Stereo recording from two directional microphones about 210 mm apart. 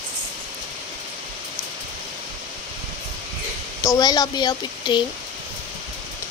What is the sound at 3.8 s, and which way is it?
Speech, 15° left (ahead or behind).